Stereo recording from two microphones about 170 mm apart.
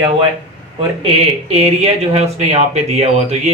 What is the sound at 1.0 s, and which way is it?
Speech, 40° right (ahead or behind).